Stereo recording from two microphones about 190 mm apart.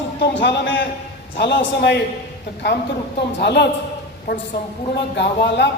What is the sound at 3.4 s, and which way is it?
Speech, 60° left (ahead or behind).